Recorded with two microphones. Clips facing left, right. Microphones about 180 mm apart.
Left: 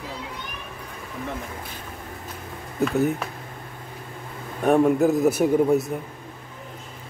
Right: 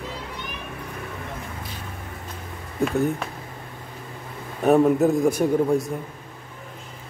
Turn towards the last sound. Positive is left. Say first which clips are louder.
# left 1 dB
turn(degrees=5)  # may be behind; listen again after turning